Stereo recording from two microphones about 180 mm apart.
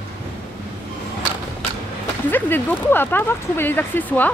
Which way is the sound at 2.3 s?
10° left (ahead or behind).